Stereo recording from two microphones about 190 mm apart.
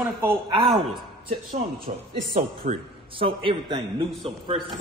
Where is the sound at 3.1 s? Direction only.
25° right (ahead or behind).